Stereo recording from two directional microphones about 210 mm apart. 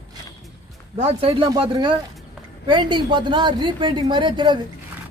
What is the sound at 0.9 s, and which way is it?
A woman's voice, 25° right (ahead or behind).